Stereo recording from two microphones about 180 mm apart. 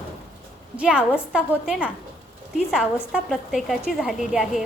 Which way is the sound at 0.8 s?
5° right (ahead or behind).